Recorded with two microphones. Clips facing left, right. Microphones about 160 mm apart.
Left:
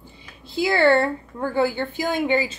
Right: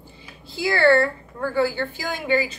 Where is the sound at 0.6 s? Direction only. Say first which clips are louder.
Even; 20° left (ahead or behind).